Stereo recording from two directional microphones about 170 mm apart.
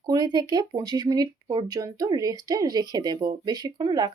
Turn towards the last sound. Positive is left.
turn(degrees=-25)  # may be behind; listen again after turning